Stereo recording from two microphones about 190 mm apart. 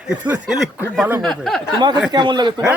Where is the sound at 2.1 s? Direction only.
25° right (ahead or behind).